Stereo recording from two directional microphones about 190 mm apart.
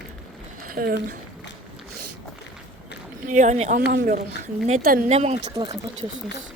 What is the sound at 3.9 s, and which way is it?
Speech, 45° right (ahead or behind).